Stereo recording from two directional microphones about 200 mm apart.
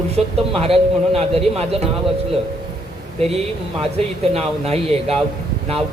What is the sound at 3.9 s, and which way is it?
Speech, 30° right (ahead or behind).